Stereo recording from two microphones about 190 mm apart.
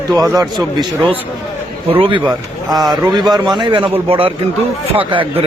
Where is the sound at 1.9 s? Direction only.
25° right (ahead or behind).